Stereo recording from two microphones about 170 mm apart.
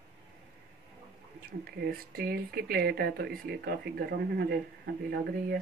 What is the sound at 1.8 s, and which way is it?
Speech, 65° right (ahead or behind).